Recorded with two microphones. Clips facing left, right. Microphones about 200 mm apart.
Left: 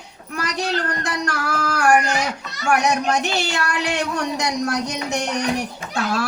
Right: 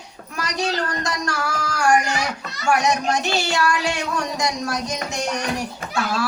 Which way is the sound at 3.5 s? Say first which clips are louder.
Right 1 dB; 60° left (ahead or behind).